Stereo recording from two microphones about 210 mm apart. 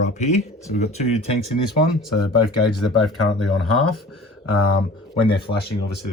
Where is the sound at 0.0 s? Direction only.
35° left (ahead or behind).